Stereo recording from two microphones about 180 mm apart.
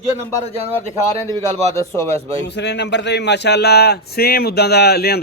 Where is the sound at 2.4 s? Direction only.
75° left (ahead or behind).